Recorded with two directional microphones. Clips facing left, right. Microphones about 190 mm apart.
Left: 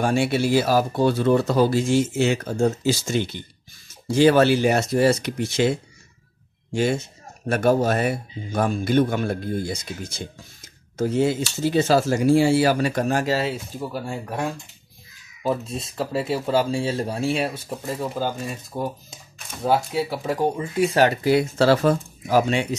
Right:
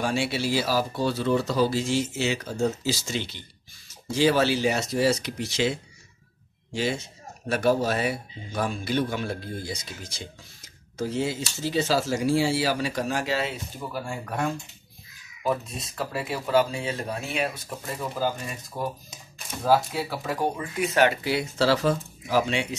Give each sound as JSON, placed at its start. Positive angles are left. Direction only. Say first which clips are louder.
{"t": 0.0, "sound": "speech", "louder": "left 6 dB", "side_deg": 50}
{"t": 15.4, "sound": "speech", "louder": "left 3 dB", "side_deg": 30}
{"t": 18.2, "sound": "speech", "louder": "even", "side_deg": 20}
{"t": 19.6, "sound": "speech", "louder": "left 1 dB", "side_deg": 20}
{"t": 20.8, "sound": "speech", "louder": "left 4 dB", "side_deg": 35}